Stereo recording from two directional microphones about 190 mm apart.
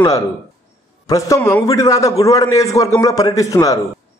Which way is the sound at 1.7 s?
20° left (ahead or behind).